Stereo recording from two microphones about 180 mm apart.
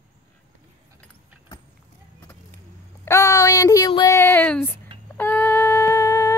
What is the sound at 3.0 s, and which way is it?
Speech, 15° left (ahead or behind).